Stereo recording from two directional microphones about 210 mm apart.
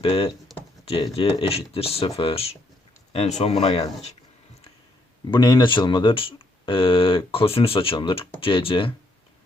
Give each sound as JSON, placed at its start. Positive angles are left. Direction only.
{"t": 0.0, "sound": "speech", "side_deg": 25}
{"t": 5.3, "sound": "speech", "side_deg": 20}